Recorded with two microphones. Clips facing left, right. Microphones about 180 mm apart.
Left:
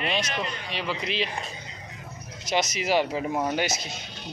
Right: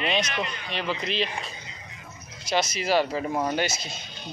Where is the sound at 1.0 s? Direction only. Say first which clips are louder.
Right 1 dB; 10° left (ahead or behind).